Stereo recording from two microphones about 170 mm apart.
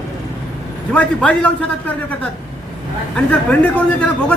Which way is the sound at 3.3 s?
5° left (ahead or behind).